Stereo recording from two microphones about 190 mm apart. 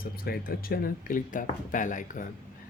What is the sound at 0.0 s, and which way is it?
Speech, 50° left (ahead or behind).